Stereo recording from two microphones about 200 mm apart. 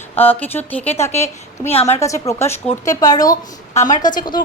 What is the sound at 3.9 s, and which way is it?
Speech, 20° left (ahead or behind).